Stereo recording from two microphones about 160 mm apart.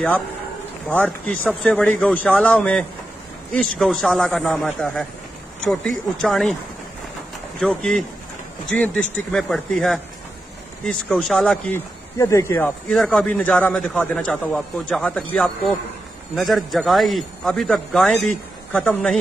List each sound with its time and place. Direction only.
0.8 s a man's voice: 5° left (ahead or behind)
6.2 s a man's voice: centre (ahead or behind)
7.6 s a man's voice: 5° left (ahead or behind)
12.2 s a man's voice: 20° left (ahead or behind)
12.9 s a man's voice: 5° left (ahead or behind)